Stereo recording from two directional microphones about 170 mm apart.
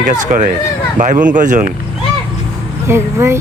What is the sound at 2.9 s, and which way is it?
Speech, 15° right (ahead or behind).